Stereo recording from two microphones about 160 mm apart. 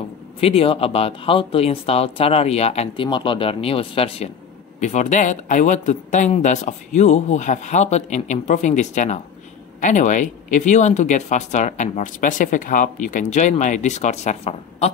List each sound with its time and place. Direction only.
0.4 s speech: 35° left (ahead or behind)
4.7 s speech: 50° left (ahead or behind)